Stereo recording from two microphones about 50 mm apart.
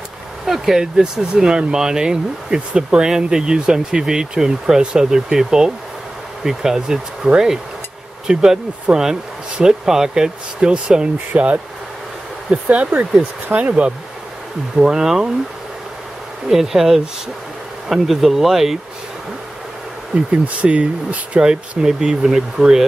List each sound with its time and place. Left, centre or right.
0.5 s speech: centre; by 13.9 s right
14.8 s speech: centre
16.4 s speech: centre
20.4 s speech: right
21.5 s speech: centre